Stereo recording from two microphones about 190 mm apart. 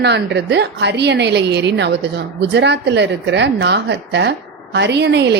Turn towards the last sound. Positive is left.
turn(degrees=-65)  # may be behind; listen again after turning